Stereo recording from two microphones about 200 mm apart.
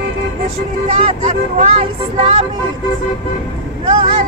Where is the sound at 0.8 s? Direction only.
30° right (ahead or behind).